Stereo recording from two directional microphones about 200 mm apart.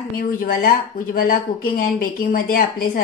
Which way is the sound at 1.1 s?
45° left (ahead or behind).